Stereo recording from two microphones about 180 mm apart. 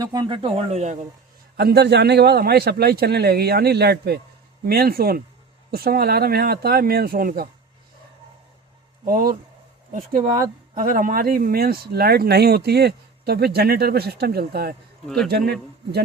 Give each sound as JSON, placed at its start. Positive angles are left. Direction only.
{"t": 0.0, "sound": "speech", "side_deg": -20}
{"t": 1.5, "sound": "speech", "side_deg": -65}
{"t": 9.0, "sound": "speech", "side_deg": -50}
{"t": 15.0, "sound": "speech", "side_deg": 0}